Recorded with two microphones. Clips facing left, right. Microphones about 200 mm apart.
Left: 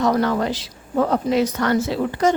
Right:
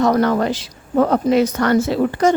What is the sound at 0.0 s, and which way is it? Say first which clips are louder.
Speech: right 3 dB; 50° right (ahead or behind).